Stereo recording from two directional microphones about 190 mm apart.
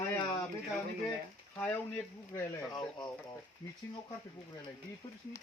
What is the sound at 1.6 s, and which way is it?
Speech, 10° left (ahead or behind).